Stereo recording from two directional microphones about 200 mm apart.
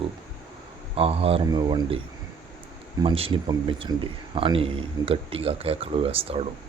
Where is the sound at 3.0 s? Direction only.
25° right (ahead or behind).